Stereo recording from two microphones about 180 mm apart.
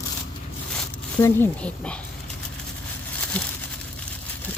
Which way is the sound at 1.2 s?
15° left (ahead or behind).